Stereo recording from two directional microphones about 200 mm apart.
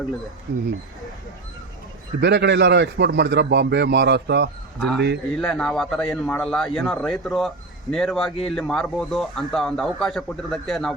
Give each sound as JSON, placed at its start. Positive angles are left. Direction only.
{"t": 2.2, "sound": "a man's voice", "side_deg": -60}
{"t": 5.4, "sound": "a man's voice", "side_deg": 5}